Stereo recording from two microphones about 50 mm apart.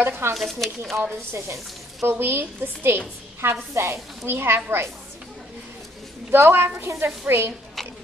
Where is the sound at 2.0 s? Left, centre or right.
Right.